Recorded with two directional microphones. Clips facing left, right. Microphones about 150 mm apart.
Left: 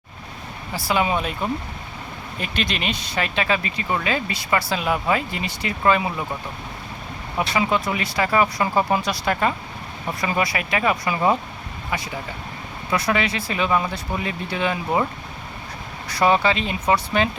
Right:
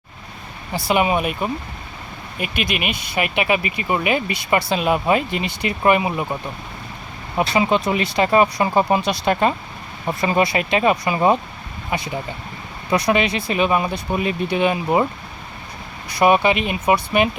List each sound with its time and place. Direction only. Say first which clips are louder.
0.7 s speech: right 3 dB; 20° right (ahead or behind)
7.3 s speech: right 4 dB; 20° right (ahead or behind)
16.0 s speech: right 3 dB; 15° right (ahead or behind)